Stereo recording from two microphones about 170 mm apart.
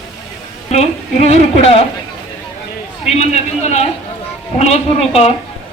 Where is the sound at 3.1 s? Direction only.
40° left (ahead or behind).